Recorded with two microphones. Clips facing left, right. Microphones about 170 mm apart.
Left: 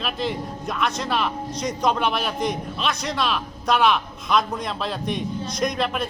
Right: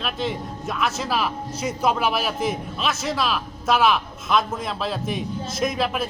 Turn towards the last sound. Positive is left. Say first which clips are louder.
# even
turn(degrees=-5)  # may be behind; listen again after turning